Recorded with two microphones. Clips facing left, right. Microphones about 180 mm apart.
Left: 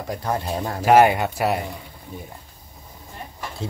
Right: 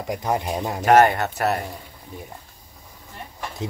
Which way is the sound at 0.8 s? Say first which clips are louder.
Left 1 dB; 10° left (ahead or behind).